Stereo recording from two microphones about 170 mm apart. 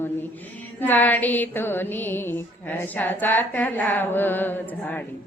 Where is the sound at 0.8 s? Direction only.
10° left (ahead or behind).